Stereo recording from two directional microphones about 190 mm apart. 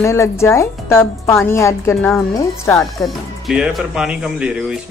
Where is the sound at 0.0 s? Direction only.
15° left (ahead or behind).